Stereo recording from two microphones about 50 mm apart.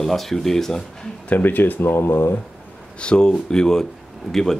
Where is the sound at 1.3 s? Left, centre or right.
Left.